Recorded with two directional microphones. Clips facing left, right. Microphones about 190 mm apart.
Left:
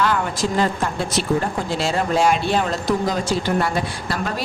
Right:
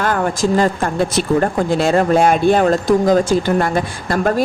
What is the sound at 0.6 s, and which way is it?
A woman's voice, 50° right (ahead or behind).